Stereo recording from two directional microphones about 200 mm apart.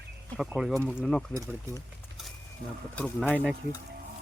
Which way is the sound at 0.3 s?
Centre (ahead or behind).